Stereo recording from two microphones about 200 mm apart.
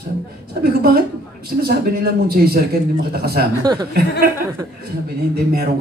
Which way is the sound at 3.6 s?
20° right (ahead or behind).